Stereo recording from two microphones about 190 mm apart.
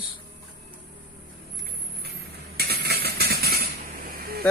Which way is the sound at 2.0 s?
55° right (ahead or behind).